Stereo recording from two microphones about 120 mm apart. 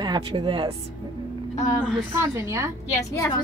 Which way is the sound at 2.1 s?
25° right (ahead or behind).